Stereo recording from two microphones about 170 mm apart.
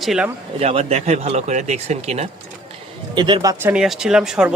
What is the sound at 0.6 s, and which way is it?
Speech, 40° right (ahead or behind).